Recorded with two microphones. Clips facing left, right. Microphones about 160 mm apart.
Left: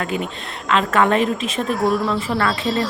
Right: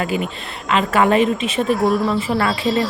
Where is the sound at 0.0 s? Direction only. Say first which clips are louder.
Right 2 dB; centre (ahead or behind).